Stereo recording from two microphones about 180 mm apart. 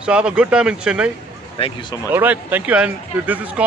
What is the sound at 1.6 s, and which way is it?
Speech, 30° left (ahead or behind).